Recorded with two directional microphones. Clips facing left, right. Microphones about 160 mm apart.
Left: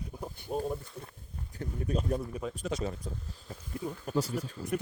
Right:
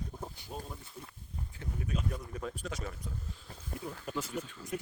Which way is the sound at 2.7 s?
25° left (ahead or behind).